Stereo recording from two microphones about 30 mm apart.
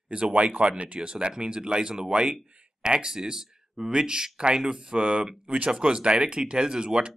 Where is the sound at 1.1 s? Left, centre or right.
Right.